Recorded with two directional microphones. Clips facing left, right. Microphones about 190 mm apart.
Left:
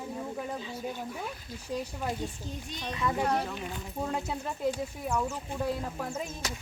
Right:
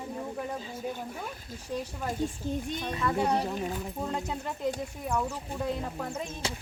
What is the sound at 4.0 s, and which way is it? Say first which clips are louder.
Speech: left 2 dB; 5° left (ahead or behind).